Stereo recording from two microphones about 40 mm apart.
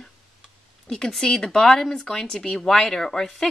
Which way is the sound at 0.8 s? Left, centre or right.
Centre.